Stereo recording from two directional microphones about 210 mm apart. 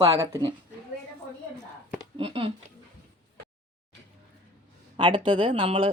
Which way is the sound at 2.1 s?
25° right (ahead or behind).